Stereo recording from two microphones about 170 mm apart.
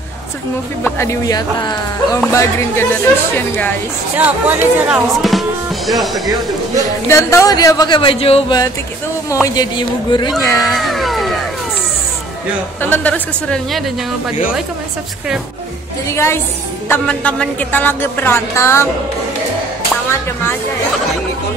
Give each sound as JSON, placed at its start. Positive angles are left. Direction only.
{"t": 0.8, "sound": "a woman's voice", "side_deg": 15}
{"t": 4.2, "sound": "a woman's voice", "side_deg": -10}
{"t": 7.1, "sound": "speech", "side_deg": 15}
{"t": 9.3, "sound": "speech", "side_deg": 20}
{"t": 10.6, "sound": "speech", "side_deg": 0}
{"t": 12.9, "sound": "a woman's voice", "side_deg": 10}
{"t": 16.1, "sound": "a woman's voice", "side_deg": 15}